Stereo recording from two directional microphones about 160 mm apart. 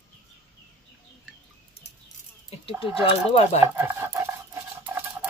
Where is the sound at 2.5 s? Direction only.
35° left (ahead or behind).